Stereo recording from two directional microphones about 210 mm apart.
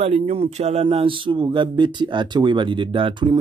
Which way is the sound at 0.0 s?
30° right (ahead or behind).